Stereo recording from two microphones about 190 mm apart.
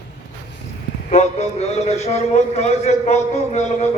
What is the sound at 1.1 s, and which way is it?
A man's voice, 35° left (ahead or behind).